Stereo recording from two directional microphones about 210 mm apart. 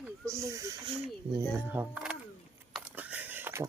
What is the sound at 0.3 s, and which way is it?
Speech, 15° right (ahead or behind).